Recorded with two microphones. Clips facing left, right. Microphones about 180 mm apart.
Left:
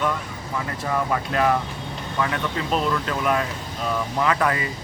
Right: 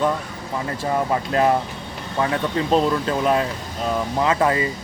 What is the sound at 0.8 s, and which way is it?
Speech, 25° right (ahead or behind).